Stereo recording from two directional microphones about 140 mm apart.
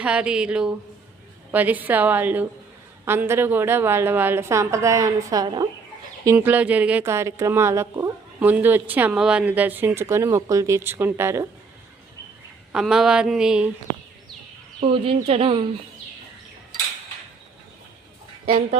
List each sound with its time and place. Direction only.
0.0 s speech: 5° right (ahead or behind); by 5.6 s 30° right (ahead or behind)
6.3 s speech: 10° right (ahead or behind)
12.7 s speech: 5° right (ahead or behind)
14.8 s speech: 45° right (ahead or behind)